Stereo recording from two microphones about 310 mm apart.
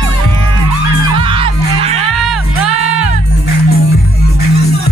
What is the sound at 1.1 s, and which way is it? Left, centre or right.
Music, centre.